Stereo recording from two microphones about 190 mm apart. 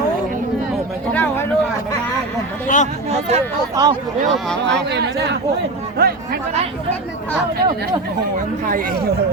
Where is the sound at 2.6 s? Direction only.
40° left (ahead or behind).